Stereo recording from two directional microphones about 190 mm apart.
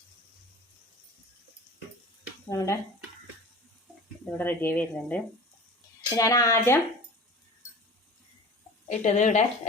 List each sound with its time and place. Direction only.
2.5 s speech: 15° left (ahead or behind)
4.3 s speech: 10° left (ahead or behind)
8.9 s speech: 40° left (ahead or behind)